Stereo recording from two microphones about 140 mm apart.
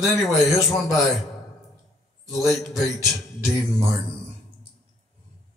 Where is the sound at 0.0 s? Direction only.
Centre (ahead or behind).